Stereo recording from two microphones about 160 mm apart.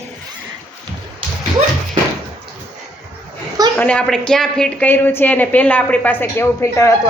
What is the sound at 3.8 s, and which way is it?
A woman's voice, 10° left (ahead or behind).